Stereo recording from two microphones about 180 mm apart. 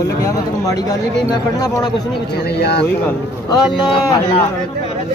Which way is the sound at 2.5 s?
65° left (ahead or behind).